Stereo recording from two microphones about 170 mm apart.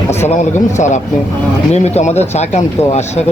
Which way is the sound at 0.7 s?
45° left (ahead or behind).